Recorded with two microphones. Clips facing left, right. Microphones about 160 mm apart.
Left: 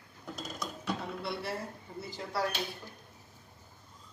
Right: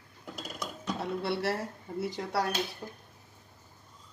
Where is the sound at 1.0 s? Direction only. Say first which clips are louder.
Right 6 dB; 70° right (ahead or behind).